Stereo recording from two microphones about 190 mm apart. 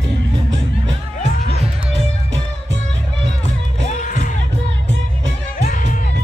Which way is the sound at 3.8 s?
40° left (ahead or behind).